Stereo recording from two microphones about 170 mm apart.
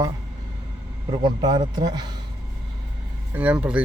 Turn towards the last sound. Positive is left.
turn(degrees=-5)  # may be behind; listen again after turning